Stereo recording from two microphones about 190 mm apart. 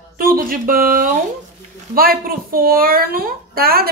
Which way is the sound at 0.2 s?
50° right (ahead or behind).